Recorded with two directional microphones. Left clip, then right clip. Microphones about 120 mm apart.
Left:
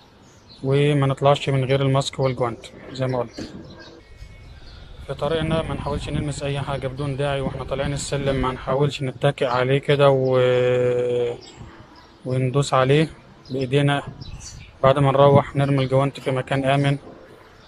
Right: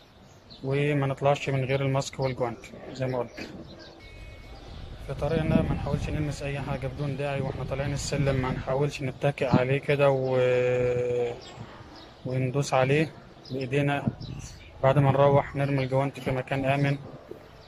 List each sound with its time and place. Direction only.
0.7 s speech: 5° right (ahead or behind)
5.0 s speech: 5° right (ahead or behind)